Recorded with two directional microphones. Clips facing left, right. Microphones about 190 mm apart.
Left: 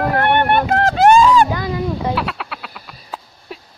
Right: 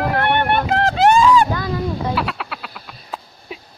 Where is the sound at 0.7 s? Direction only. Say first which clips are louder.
Left 2 dB; 50° left (ahead or behind).